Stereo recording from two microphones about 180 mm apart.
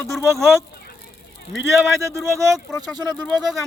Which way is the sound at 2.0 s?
15° right (ahead or behind).